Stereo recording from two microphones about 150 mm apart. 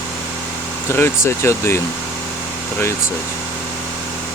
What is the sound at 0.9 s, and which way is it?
Speech, 15° left (ahead or behind).